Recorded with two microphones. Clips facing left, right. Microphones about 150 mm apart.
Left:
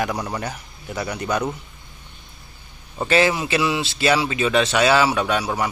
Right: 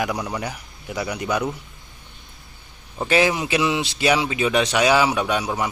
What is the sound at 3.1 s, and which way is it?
A man's voice, 15° right (ahead or behind).